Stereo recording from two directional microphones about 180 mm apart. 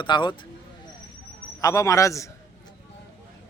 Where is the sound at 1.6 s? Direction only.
20° left (ahead or behind).